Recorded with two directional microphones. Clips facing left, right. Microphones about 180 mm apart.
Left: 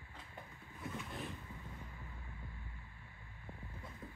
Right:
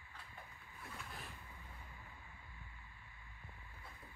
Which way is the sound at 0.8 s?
Centre (ahead or behind).